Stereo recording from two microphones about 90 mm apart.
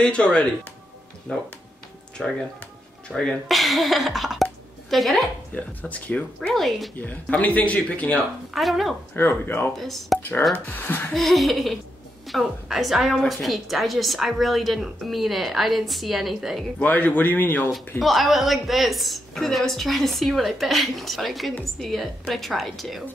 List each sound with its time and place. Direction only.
0.0 s a woman's voice: 10° left (ahead or behind)
5.5 s speech: 15° left (ahead or behind)
6.5 s a woman's voice: centre (ahead or behind)
7.0 s speech: 15° left (ahead or behind)
8.5 s a woman's voice: centre (ahead or behind)
9.1 s a man's voice: 25° left (ahead or behind)
9.8 s a woman's voice: centre (ahead or behind)
10.5 s a man's voice: 20° left (ahead or behind)
11.1 s a woman's voice: centre (ahead or behind)
16.8 s a man's voice: 20° left (ahead or behind)
17.7 s a woman's voice: centre (ahead or behind)